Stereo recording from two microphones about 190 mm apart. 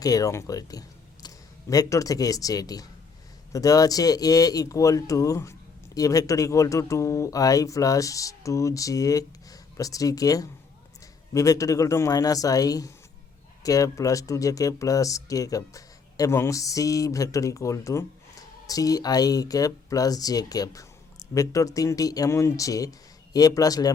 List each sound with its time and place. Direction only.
0.0 s speech: 20° left (ahead or behind)